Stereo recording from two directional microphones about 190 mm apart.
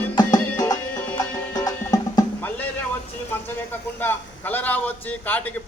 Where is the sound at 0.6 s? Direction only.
20° left (ahead or behind).